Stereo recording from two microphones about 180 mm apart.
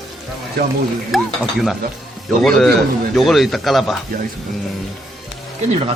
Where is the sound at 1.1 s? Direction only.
Centre (ahead or behind).